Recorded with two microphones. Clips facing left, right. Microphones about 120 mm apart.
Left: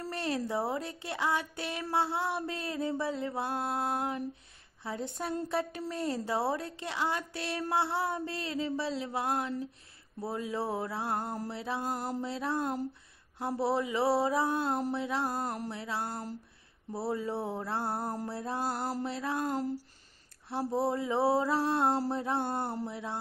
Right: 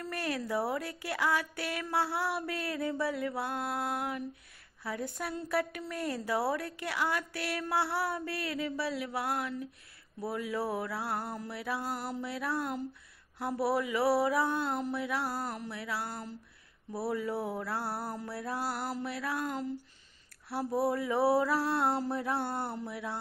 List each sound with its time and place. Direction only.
0.0 s a woman's voice: 25° left (ahead or behind)
19.5 s speech: 40° left (ahead or behind)
20.4 s a woman's voice: 25° left (ahead or behind)
21.9 s speech: 35° left (ahead or behind)
22.2 s a woman's voice: 20° left (ahead or behind)